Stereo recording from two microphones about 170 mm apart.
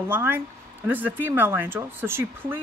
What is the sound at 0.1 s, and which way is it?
Speech, 15° right (ahead or behind).